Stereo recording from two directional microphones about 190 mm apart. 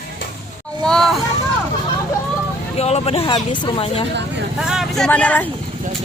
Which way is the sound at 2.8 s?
35° left (ahead or behind).